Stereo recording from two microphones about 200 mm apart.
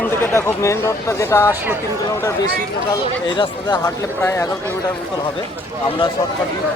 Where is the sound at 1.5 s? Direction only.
10° right (ahead or behind).